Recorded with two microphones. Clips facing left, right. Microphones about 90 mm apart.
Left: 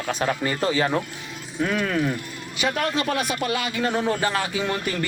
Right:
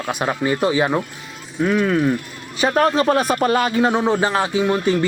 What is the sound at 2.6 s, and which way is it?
Speech, 40° right (ahead or behind).